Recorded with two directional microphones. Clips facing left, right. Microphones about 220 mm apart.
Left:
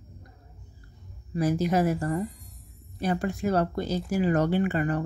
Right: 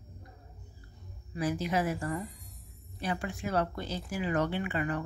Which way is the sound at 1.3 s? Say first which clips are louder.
Left 6 dB; 40° left (ahead or behind).